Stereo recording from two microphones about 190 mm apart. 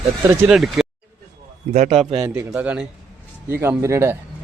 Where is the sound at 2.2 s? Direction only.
10° right (ahead or behind).